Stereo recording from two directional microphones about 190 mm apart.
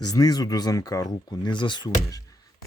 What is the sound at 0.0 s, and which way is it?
Speech, 20° left (ahead or behind).